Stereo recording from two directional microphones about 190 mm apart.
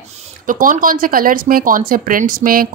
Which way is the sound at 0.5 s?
45° right (ahead or behind).